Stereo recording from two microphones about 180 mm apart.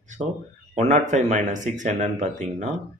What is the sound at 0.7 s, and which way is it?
A man's voice, 40° right (ahead or behind).